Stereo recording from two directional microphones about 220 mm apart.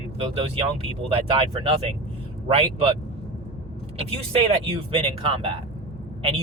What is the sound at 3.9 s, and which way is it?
Speech, 25° right (ahead or behind).